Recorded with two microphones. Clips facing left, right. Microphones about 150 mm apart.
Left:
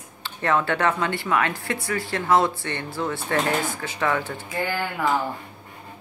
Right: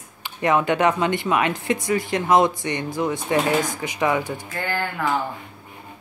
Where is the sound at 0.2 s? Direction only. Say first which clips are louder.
Right 3 dB; 15° right (ahead or behind).